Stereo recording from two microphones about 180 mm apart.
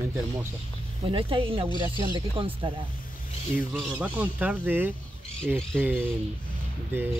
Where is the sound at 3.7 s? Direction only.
10° right (ahead or behind).